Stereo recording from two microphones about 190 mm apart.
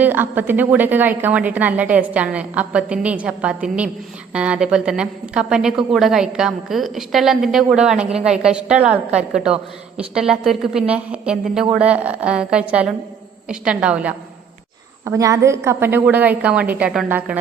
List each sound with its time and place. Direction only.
0.0 s a woman's voice: 10° right (ahead or behind)
15.0 s a woman's voice: 15° right (ahead or behind)